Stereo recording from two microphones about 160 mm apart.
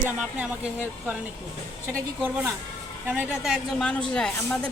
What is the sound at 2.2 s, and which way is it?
Speech, 10° right (ahead or behind).